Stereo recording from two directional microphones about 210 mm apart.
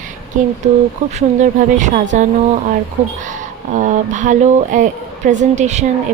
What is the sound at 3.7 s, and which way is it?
Speech, 35° right (ahead or behind).